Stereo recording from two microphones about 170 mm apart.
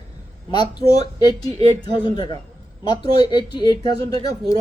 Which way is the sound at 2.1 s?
25° left (ahead or behind).